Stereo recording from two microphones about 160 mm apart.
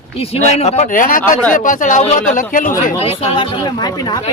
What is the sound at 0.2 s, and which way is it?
Speech, 40° left (ahead or behind).